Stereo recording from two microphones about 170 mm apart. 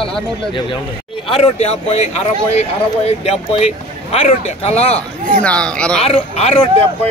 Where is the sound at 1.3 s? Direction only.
35° left (ahead or behind).